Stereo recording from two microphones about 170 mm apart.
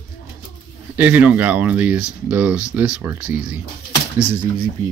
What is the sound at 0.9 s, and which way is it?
Speech, 10° right (ahead or behind).